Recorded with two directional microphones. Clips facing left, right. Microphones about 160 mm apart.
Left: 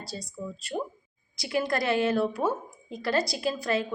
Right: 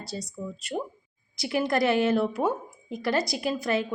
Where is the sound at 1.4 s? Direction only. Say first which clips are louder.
Right 3 dB; 20° right (ahead or behind).